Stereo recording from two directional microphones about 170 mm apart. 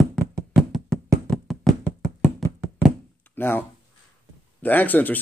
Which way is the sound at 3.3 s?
10° left (ahead or behind).